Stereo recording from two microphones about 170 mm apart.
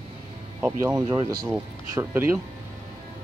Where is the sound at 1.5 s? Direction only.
10° right (ahead or behind).